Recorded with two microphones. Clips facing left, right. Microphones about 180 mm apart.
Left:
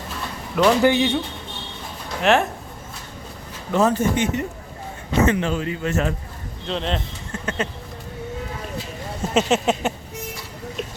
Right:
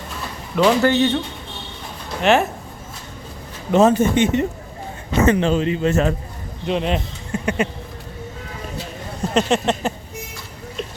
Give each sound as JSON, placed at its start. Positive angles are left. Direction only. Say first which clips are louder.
{"t": 0.5, "sound": "speech", "louder": "right 1 dB", "side_deg": 0}
{"t": 0.8, "sound": "a man's voice", "louder": "right 1 dB", "side_deg": 10}
{"t": 2.2, "sound": "speech", "louder": "right 2 dB", "side_deg": 0}
{"t": 3.7, "sound": "a man's voice", "louder": "right 4 dB", "side_deg": -20}
{"t": 6.7, "sound": "speech", "louder": "right 4 dB", "side_deg": -10}
{"t": 9.3, "sound": "speech", "louder": "right 1 dB", "side_deg": 5}